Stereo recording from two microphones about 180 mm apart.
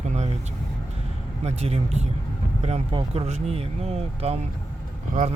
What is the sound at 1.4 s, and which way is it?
Speech, 35° right (ahead or behind).